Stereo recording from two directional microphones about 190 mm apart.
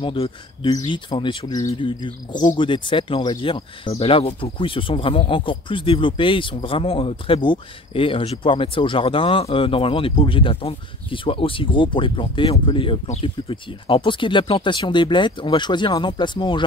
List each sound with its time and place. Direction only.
0.0 s speech: 25° left (ahead or behind)